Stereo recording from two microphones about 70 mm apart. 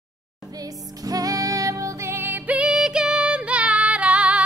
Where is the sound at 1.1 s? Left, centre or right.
Right.